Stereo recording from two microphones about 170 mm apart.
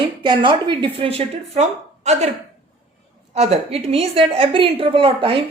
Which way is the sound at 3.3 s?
40° right (ahead or behind).